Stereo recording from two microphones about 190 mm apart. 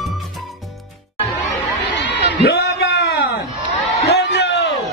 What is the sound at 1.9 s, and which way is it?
Crowd, 70° left (ahead or behind).